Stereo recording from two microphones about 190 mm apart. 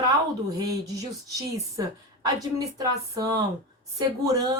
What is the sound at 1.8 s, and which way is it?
Speech, 20° right (ahead or behind).